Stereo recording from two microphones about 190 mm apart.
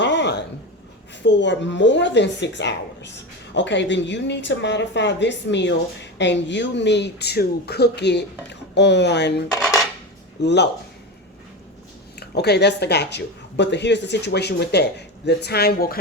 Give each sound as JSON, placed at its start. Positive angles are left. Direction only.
{"t": 0.0, "sound": "a sound", "side_deg": 65}
{"t": 1.2, "sound": "speech", "side_deg": 70}
{"t": 9.6, "sound": "dishes", "side_deg": 5}
{"t": 10.4, "sound": "speech", "side_deg": 65}
{"t": 12.2, "sound": "speech", "side_deg": 60}